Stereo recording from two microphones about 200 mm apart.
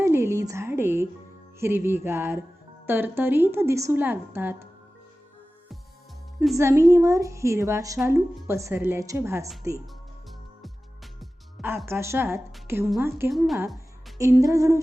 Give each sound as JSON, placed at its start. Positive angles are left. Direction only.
{"t": 0.0, "sound": "a woman's voice", "side_deg": -15}
{"t": 6.6, "sound": "a woman's voice", "side_deg": -15}
{"t": 10.6, "sound": "music", "side_deg": 0}
{"t": 11.9, "sound": "a woman's voice", "side_deg": -10}